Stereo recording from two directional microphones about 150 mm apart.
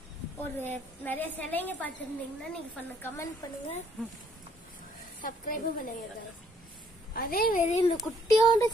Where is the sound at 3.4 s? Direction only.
25° left (ahead or behind).